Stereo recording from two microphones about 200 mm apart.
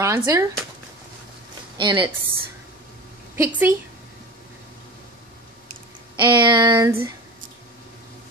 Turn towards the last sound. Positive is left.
turn(degrees=-15)  # may be behind; listen again after turning